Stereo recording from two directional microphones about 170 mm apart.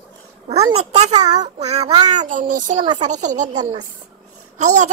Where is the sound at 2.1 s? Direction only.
50° right (ahead or behind).